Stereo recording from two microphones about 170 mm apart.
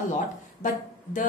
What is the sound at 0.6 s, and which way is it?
Speech, 50° left (ahead or behind).